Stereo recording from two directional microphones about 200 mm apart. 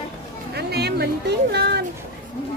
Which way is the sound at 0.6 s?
55° right (ahead or behind).